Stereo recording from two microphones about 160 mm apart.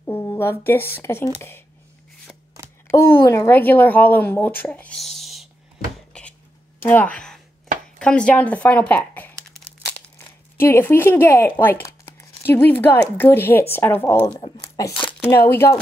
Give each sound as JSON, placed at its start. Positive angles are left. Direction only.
{"t": 0.0, "sound": "speech", "side_deg": 15}
{"t": 2.9, "sound": "speech", "side_deg": 15}
{"t": 6.1, "sound": "chopping", "side_deg": 5}
{"t": 6.8, "sound": "a sound", "side_deg": 10}
{"t": 8.0, "sound": "speech", "side_deg": 5}
{"t": 10.6, "sound": "speech", "side_deg": 15}
{"t": 15.0, "sound": "crumpling", "side_deg": 5}
{"t": 15.4, "sound": "speech", "side_deg": 15}